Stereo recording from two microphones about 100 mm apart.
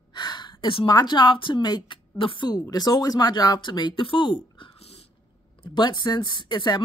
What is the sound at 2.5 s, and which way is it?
A woman's voice, 40° left (ahead or behind).